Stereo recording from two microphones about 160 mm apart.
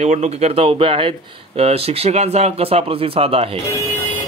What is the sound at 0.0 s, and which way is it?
Speech, 45° right (ahead or behind).